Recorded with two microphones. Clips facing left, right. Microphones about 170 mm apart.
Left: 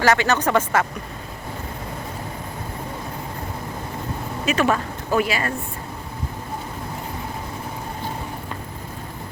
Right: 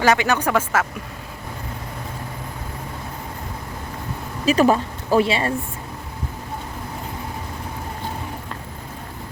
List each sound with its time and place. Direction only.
0.0 s speech: 15° right (ahead or behind)
4.4 s speech: 35° right (ahead or behind)